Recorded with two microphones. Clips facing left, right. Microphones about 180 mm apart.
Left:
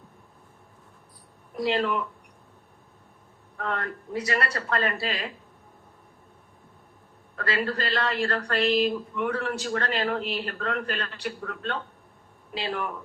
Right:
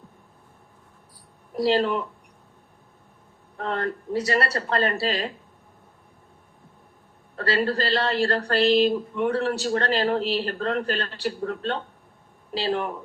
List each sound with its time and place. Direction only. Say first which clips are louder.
1.5 s speech: right 4 dB; 35° right (ahead or behind)
3.6 s speech: right 4 dB; 30° right (ahead or behind)
7.3 s speech: right 4 dB; 30° right (ahead or behind)